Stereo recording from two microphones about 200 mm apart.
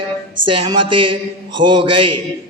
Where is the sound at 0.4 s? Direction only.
25° right (ahead or behind).